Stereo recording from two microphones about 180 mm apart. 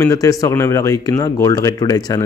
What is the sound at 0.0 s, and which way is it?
A man's voice, 20° left (ahead or behind).